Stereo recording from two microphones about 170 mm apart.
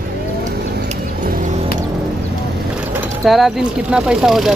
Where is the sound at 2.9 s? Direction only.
5° right (ahead or behind).